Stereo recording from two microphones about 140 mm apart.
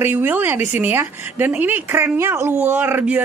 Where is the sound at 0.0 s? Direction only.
15° right (ahead or behind).